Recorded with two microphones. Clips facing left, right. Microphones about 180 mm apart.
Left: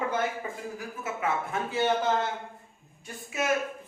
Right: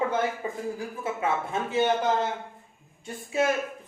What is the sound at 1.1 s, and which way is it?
Speech, 25° right (ahead or behind).